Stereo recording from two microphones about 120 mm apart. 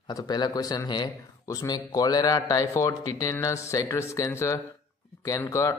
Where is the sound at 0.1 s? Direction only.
35° left (ahead or behind).